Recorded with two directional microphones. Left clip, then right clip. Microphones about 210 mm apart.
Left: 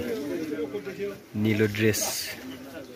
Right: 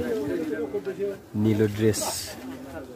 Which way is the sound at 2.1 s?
15° right (ahead or behind).